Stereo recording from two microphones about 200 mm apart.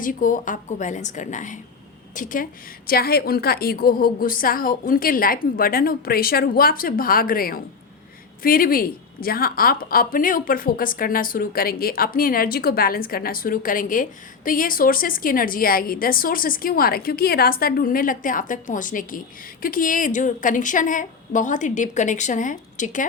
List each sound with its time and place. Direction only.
0.0 s a woman's voice: 40° left (ahead or behind)